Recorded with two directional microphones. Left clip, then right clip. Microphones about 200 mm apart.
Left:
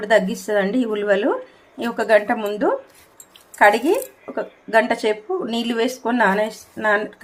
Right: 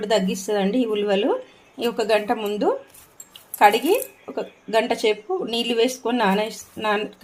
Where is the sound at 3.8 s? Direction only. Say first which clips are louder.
Left 1 dB; 5° left (ahead or behind).